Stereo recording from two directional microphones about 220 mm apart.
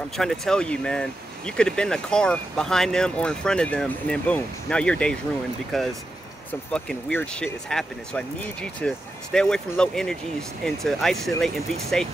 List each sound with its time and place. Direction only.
0.2 s speech: centre (ahead or behind)